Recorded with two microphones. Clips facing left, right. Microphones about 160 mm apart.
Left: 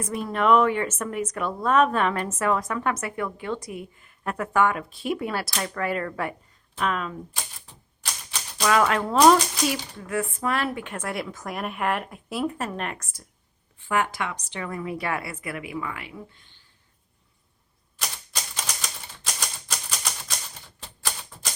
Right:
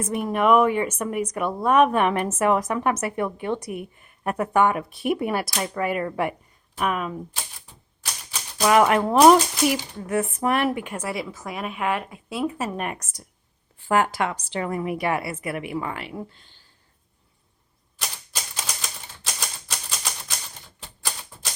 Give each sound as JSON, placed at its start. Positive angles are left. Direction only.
{"t": 0.0, "sound": "speech", "side_deg": -20}
{"t": 8.6, "sound": "speech", "side_deg": -20}
{"t": 10.0, "sound": "a woman's voice", "side_deg": -25}
{"t": 13.7, "sound": "a woman's voice", "side_deg": -35}
{"t": 18.0, "sound": "typewriter", "side_deg": -5}